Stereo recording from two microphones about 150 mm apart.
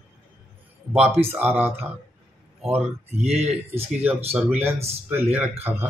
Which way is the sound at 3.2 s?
45° right (ahead or behind).